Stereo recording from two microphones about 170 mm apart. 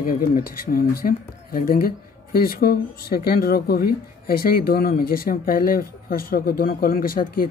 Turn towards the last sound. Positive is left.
turn(degrees=60)  # may be behind; listen again after turning